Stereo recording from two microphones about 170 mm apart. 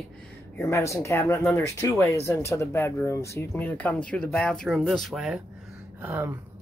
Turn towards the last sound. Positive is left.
turn(degrees=-10)  # may be behind; listen again after turning